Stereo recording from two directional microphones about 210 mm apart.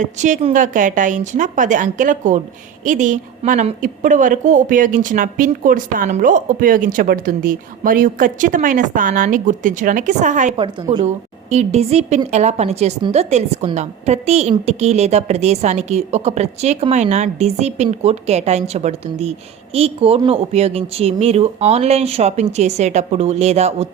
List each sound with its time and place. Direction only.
0.0 s a woman's voice: 35° right (ahead or behind)
10.6 s a woman's voice: 25° right (ahead or behind)